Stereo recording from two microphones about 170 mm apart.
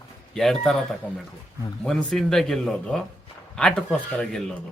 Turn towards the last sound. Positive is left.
turn(degrees=5)  # may be behind; listen again after turning